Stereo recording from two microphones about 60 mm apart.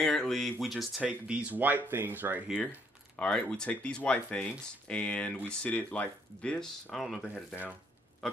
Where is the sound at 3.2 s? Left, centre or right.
Centre.